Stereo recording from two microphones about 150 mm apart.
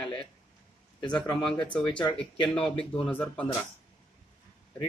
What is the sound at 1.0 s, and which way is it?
Speech, 30° left (ahead or behind).